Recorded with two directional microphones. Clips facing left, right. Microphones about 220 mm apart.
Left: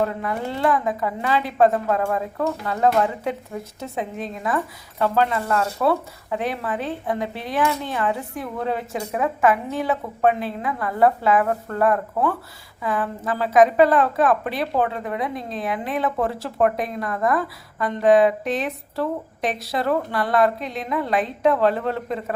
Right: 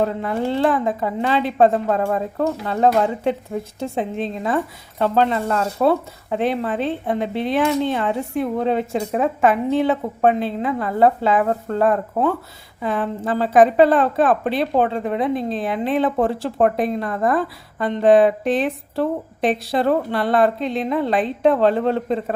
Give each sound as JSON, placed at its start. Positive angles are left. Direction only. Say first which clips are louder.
{"t": 0.0, "sound": "a woman's voice", "louder": "right 3 dB", "side_deg": -25}